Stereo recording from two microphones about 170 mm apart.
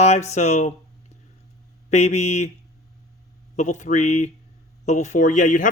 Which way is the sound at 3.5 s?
45° left (ahead or behind).